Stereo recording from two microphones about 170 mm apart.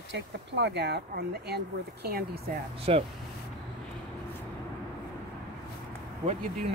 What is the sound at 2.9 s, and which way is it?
Speech, 40° right (ahead or behind).